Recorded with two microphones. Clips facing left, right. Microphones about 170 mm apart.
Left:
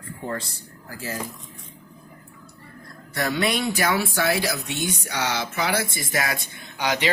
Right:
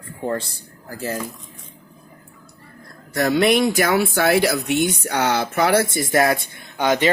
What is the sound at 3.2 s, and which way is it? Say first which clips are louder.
Speech: right 7 dB; 50° right (ahead or behind).